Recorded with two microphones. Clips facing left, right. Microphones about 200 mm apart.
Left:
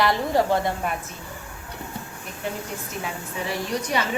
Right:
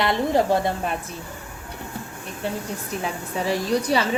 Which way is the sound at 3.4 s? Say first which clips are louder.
Right 5 dB; 35° right (ahead or behind).